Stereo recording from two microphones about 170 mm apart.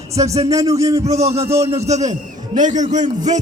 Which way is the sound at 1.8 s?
45° right (ahead or behind).